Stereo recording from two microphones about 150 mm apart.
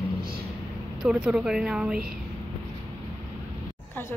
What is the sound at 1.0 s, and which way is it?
Speech, 5° right (ahead or behind).